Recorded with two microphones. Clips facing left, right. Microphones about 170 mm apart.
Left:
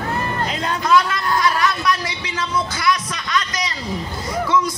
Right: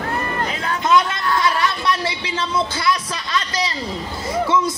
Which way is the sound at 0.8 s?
25° right (ahead or behind).